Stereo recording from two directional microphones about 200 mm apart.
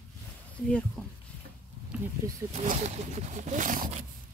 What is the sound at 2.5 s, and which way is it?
Speech, 35° right (ahead or behind).